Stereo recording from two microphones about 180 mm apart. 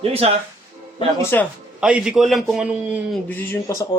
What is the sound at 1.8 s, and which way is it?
A man's voice, 5° right (ahead or behind).